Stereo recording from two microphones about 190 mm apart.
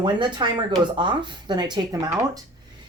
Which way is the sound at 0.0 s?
25° right (ahead or behind).